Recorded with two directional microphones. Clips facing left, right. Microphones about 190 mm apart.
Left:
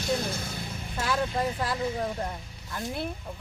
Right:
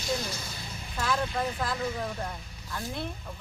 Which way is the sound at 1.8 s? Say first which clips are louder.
Left 3 dB; 25° left (ahead or behind).